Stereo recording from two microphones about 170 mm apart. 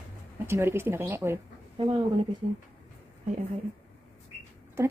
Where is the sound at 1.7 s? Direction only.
30° right (ahead or behind).